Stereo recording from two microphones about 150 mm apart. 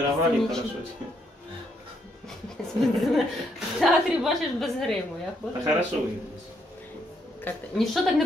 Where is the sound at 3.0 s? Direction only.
Centre (ahead or behind).